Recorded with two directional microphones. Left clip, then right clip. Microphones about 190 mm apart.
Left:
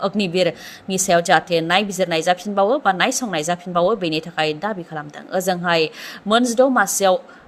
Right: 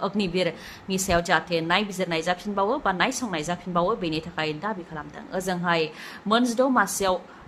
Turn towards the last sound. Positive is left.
turn(degrees=25)  # may be behind; listen again after turning